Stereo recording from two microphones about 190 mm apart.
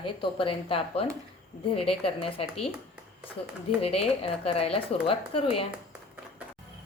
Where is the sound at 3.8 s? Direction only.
30° left (ahead or behind).